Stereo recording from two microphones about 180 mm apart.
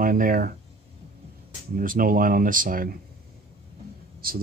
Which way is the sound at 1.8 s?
50° right (ahead or behind).